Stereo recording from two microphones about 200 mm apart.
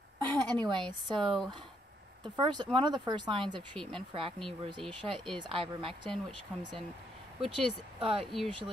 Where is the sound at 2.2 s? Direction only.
20° right (ahead or behind).